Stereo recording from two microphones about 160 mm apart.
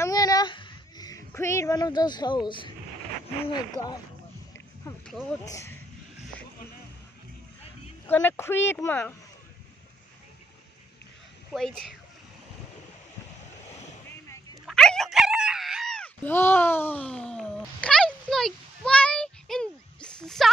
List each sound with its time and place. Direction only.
0.0 s a sound: 20° left (ahead or behind)
3.7 s speech: 25° left (ahead or behind)
5.0 s speech: 5° left (ahead or behind)
5.4 s speech: 20° left (ahead or behind)
8.1 s a woman's voice: 10° left (ahead or behind)
11.5 s speech: centre (ahead or behind)
14.0 s whip: 20° left (ahead or behind)
14.7 s screaming: 5° left (ahead or behind)